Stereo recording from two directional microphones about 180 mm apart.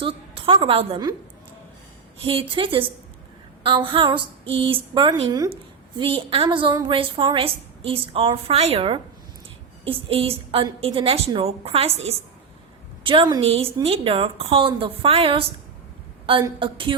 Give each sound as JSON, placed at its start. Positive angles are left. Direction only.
{"t": 0.0, "sound": "a woman's voice", "side_deg": -30}
{"t": 2.1, "sound": "a woman's voice", "side_deg": -30}